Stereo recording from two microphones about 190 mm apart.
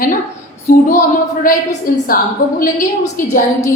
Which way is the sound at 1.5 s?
45° left (ahead or behind).